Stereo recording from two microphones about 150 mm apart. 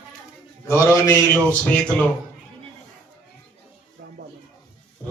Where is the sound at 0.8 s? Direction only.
15° left (ahead or behind).